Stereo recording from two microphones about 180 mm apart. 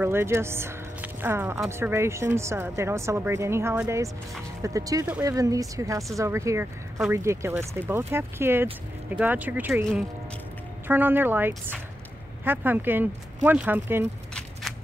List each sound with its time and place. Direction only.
0.0 s a woman's voice: 15° right (ahead or behind)